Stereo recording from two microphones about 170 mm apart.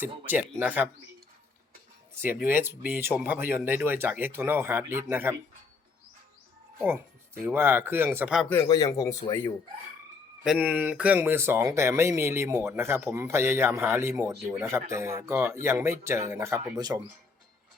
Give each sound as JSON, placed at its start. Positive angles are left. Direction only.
{"t": 0.0, "sound": "speech", "side_deg": -10}
{"t": 2.1, "sound": "speech", "side_deg": -15}
{"t": 6.7, "sound": "speech", "side_deg": -15}
{"t": 8.6, "sound": "speech", "side_deg": 20}
{"t": 10.4, "sound": "speech", "side_deg": -5}